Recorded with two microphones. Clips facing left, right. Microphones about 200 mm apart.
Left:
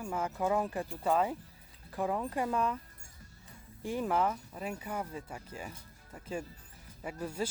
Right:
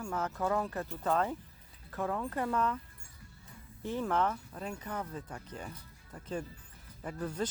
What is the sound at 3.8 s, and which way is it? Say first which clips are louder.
Speech: left 1 dB; 10° left (ahead or behind).